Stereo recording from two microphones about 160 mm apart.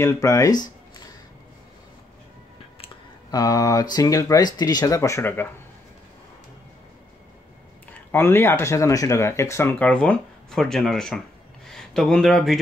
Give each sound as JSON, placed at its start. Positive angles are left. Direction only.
{"t": 0.0, "sound": "speech", "side_deg": 20}
{"t": 3.3, "sound": "speech", "side_deg": 25}
{"t": 8.1, "sound": "speech", "side_deg": 15}